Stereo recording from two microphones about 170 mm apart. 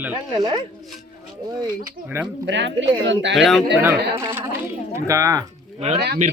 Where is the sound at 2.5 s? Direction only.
90° right.